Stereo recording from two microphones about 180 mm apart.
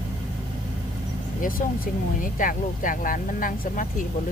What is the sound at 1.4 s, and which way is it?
Speech, 50° left (ahead or behind).